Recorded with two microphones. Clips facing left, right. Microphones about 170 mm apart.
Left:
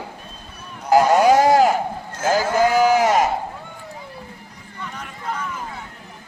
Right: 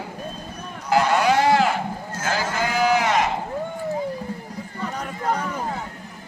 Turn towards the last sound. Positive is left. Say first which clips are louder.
# right 5 dB
turn(degrees=-40)  # may be behind; listen again after turning